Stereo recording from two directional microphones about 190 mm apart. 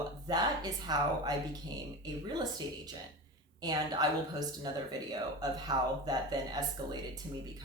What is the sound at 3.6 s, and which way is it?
Speech, 20° right (ahead or behind).